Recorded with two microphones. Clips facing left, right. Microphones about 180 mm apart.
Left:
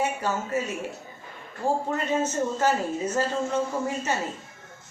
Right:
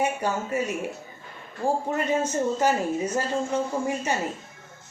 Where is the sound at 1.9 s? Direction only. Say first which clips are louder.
Right 1 dB; 15° right (ahead or behind).